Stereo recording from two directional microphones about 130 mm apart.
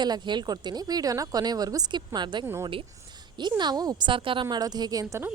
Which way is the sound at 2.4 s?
20° right (ahead or behind).